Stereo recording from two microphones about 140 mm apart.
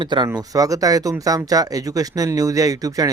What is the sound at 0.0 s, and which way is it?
Speech, 35° right (ahead or behind).